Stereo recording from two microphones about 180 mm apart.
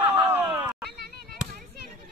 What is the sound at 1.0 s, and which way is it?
Basketball bounce, 60° right (ahead or behind).